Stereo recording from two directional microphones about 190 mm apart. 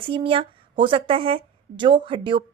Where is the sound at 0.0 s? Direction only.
30° right (ahead or behind).